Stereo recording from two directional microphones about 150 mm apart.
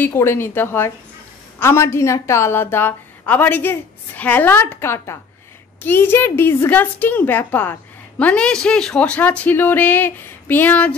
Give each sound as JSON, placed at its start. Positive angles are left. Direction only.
{"t": 0.0, "sound": "a woman's voice", "side_deg": 15}